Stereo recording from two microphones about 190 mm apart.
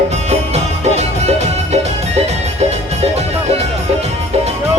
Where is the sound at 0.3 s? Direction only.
35° right (ahead or behind).